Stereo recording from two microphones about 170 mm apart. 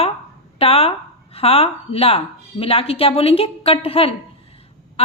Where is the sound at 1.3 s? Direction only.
35° left (ahead or behind).